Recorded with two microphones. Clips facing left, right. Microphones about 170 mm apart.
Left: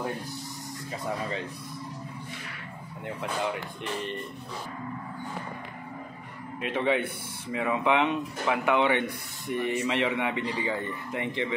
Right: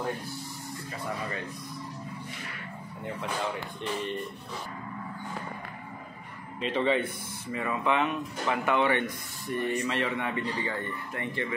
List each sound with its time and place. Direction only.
6.6 s a man's voice: 10° left (ahead or behind)